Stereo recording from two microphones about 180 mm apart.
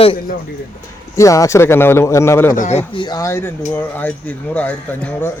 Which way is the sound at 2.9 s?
20° left (ahead or behind).